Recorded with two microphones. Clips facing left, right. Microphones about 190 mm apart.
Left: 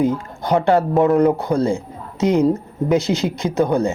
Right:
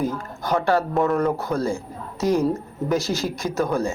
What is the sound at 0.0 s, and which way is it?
A man's voice, 20° left (ahead or behind).